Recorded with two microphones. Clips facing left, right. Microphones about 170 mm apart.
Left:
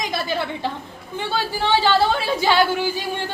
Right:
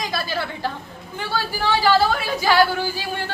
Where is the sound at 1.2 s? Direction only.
25° left (ahead or behind).